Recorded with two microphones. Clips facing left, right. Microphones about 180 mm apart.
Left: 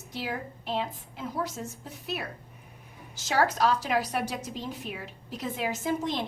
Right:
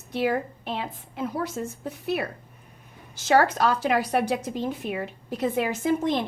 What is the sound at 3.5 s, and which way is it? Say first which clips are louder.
A woman's voice: right 3 dB; 60° right (ahead or behind).